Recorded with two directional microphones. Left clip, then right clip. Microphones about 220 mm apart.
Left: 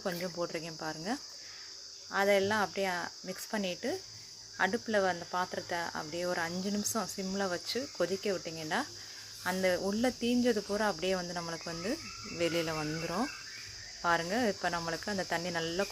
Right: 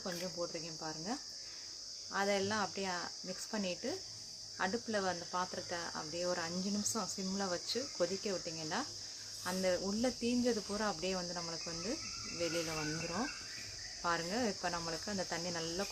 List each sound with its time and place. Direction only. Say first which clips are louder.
0.0 s cricket: left 5 dB; 30° left (ahead or behind)